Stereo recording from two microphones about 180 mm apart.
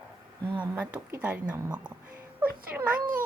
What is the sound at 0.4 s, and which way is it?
Speech, 25° right (ahead or behind).